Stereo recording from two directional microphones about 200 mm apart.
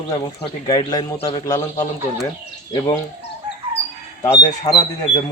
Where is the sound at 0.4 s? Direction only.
25° left (ahead or behind).